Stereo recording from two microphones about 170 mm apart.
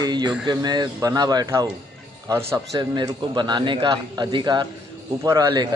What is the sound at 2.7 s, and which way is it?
A man's voice, 25° right (ahead or behind).